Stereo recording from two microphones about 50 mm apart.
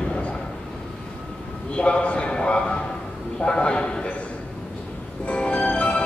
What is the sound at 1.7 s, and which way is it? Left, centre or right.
A man's voice, left.